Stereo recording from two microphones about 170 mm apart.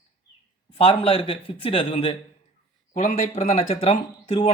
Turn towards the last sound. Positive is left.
turn(degrees=35)  # may be behind; listen again after turning